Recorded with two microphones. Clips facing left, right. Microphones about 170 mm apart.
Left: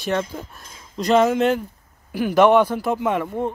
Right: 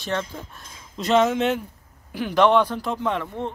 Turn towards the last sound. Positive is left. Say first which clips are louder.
# left 4 dB
turn(degrees=10)  # may be behind; listen again after turning